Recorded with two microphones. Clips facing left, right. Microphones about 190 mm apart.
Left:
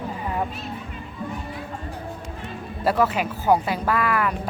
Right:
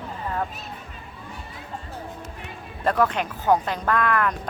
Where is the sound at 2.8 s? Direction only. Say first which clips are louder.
Left 1 dB; 5° left (ahead or behind).